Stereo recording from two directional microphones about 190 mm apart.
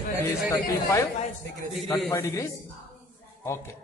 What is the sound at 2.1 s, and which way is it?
Speech, 15° left (ahead or behind).